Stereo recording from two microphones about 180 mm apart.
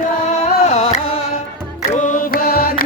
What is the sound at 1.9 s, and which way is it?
Music, 45° left (ahead or behind).